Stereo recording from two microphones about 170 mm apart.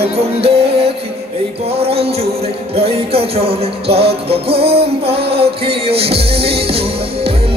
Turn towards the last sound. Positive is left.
turn(degrees=-35)  # may be behind; listen again after turning